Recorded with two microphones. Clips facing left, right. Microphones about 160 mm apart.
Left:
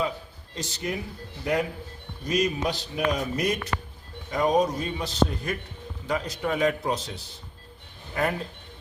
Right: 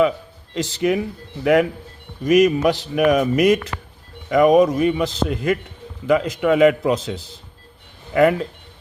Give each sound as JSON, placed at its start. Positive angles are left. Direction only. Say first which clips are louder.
{"t": 0.5, "sound": "speech", "louder": "right 12 dB", "side_deg": -90}
{"t": 2.2, "sound": "speech", "louder": "right 11 dB", "side_deg": -90}